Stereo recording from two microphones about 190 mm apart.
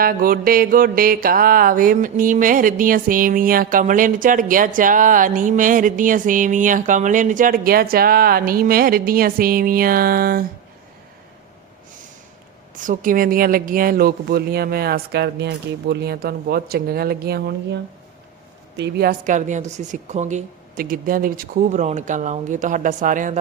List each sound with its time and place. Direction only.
0.0 s mantra: 50° right (ahead or behind)
12.7 s mantra: 45° right (ahead or behind)
18.8 s a woman's voice: 60° right (ahead or behind)
19.2 s speech: 40° right (ahead or behind)